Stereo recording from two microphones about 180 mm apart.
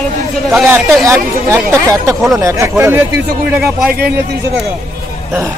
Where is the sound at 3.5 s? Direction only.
Centre (ahead or behind).